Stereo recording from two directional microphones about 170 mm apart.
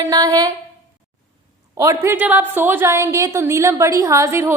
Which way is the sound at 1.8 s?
15° right (ahead or behind).